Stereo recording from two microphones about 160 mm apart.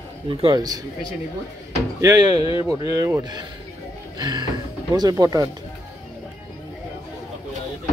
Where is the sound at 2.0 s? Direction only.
25° right (ahead or behind).